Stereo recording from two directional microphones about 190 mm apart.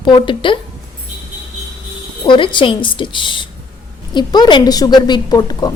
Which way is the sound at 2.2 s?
25° left (ahead or behind).